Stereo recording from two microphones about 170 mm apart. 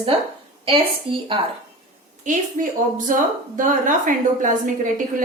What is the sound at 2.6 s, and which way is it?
Speech, 50° right (ahead or behind).